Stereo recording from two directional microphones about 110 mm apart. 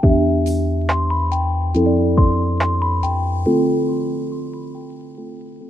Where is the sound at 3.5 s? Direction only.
20° left (ahead or behind).